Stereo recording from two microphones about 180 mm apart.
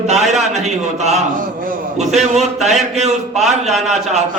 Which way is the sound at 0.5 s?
40° right (ahead or behind).